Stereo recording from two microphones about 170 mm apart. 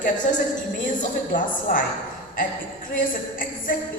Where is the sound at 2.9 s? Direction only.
55° left (ahead or behind).